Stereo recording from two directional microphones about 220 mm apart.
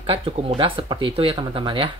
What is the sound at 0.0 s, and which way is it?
Speech, 25° right (ahead or behind).